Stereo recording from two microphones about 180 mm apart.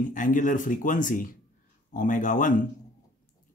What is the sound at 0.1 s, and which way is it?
Speech, 45° left (ahead or behind).